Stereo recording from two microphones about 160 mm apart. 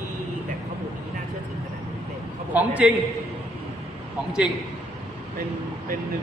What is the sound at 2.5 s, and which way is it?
Speech, 10° right (ahead or behind).